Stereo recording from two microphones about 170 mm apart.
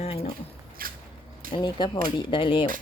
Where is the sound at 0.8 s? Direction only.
60° right (ahead or behind).